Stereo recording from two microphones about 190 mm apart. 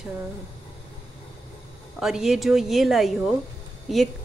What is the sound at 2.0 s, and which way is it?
Speech, centre (ahead or behind).